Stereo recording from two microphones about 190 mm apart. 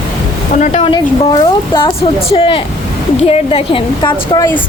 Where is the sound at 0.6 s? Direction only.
40° left (ahead or behind).